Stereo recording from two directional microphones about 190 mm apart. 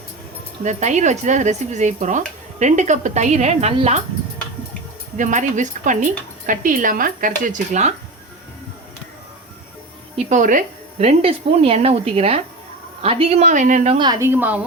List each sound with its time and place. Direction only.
0.6 s a woman's voice: 40° right (ahead or behind)
5.1 s speech: 40° right (ahead or behind)
10.2 s a woman's voice: 40° right (ahead or behind)
14.1 s a woman's voice: 15° right (ahead or behind)